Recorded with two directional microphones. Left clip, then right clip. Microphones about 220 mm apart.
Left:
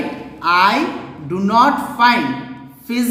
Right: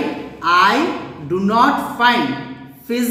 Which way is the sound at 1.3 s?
40° left (ahead or behind).